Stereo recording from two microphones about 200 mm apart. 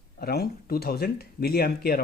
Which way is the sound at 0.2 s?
50° left (ahead or behind).